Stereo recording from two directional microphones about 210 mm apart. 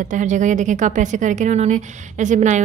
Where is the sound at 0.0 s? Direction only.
35° right (ahead or behind).